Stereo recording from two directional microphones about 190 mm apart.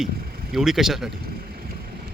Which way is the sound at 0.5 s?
Centre (ahead or behind).